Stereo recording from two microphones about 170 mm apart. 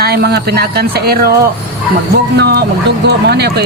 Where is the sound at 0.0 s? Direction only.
70° right (ahead or behind).